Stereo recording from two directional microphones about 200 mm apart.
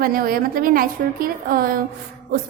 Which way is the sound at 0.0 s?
45° right (ahead or behind).